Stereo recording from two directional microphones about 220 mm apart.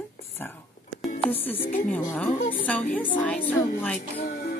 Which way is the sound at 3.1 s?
5° left (ahead or behind).